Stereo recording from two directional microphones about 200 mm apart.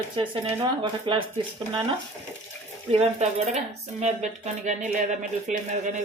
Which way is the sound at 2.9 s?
35° right (ahead or behind).